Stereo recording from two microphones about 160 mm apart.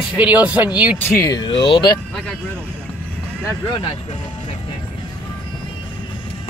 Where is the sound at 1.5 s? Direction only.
30° left (ahead or behind).